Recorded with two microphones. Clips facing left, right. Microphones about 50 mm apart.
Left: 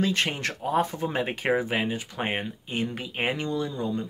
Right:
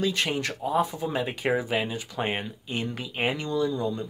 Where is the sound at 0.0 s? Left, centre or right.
Left.